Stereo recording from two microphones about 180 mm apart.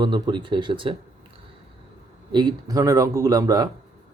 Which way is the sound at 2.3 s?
25° right (ahead or behind).